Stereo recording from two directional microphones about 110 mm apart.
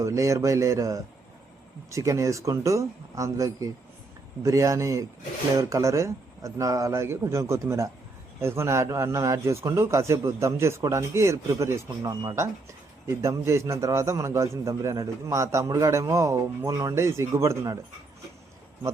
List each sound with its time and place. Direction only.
0.0 s a man's voice: 30° right (ahead or behind)
13.2 s a man's voice: 25° right (ahead or behind)